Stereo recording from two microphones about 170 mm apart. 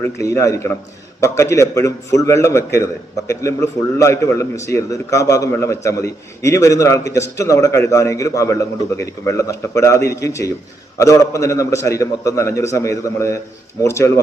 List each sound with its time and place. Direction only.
0.0 s a man's voice: 15° left (ahead or behind)